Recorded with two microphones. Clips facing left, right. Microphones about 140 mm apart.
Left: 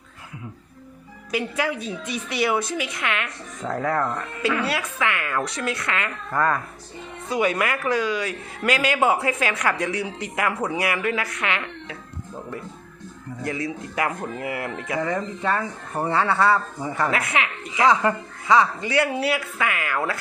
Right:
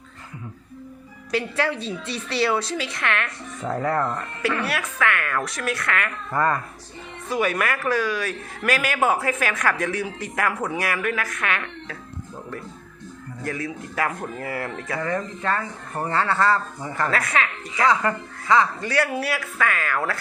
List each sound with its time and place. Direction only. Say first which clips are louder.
1.3 s speech: right 1 dB; 15° left (ahead or behind)
3.6 s speech: even; centre (ahead or behind)
4.6 s speech: even; 20° left (ahead or behind)
6.3 s speech: even; centre (ahead or behind)
7.3 s speech: left 1 dB; 20° left (ahead or behind)
13.4 s speech: left 1 dB; 20° left (ahead or behind)
16.9 s speech: even; 20° left (ahead or behind)